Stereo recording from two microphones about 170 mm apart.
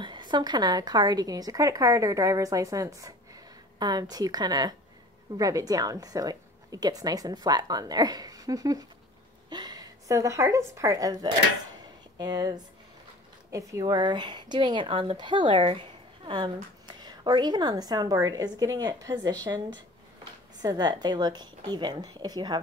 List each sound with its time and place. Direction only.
0.0 s speech: 25° right (ahead or behind)
20.6 s speech: 25° right (ahead or behind)